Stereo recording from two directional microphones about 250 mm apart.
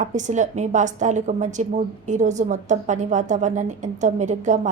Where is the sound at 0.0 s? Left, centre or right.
Right.